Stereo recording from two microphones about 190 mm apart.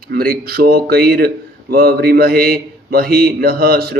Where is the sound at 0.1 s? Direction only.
55° right (ahead or behind).